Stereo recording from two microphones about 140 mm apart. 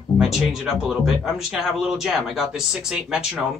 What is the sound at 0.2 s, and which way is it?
Speech, centre (ahead or behind).